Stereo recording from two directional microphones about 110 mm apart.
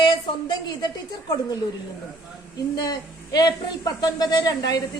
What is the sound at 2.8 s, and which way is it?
Speech, 35° left (ahead or behind).